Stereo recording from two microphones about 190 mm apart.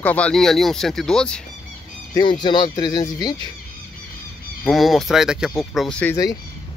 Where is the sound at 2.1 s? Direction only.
25° left (ahead or behind).